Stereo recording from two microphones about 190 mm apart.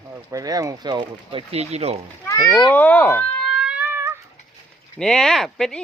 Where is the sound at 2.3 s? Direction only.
15° left (ahead or behind).